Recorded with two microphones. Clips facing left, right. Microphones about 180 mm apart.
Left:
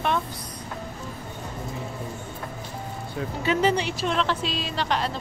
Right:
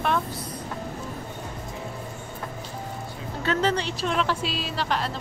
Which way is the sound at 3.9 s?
5° right (ahead or behind).